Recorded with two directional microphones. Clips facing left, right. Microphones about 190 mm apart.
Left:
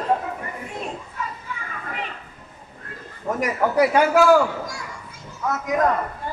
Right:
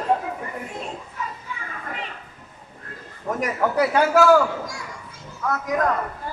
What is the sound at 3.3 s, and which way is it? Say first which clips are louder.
A man's voice: left 1 dB; 10° left (ahead or behind).